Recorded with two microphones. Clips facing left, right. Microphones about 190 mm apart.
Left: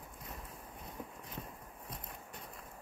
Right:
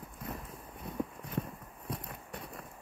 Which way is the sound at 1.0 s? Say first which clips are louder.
Right 12 dB; 70° right (ahead or behind).